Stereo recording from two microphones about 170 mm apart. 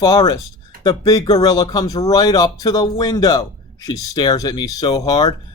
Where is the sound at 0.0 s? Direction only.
25° left (ahead or behind).